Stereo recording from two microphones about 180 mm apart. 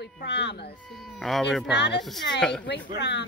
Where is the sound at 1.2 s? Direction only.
Centre (ahead or behind).